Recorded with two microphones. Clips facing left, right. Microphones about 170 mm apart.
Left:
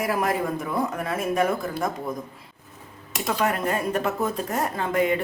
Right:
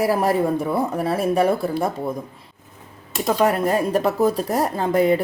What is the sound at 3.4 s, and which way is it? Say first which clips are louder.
Speech: right 6 dB; 35° right (ahead or behind).